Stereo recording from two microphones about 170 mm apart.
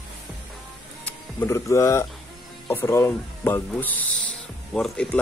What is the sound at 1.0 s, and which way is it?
Speech, 15° left (ahead or behind).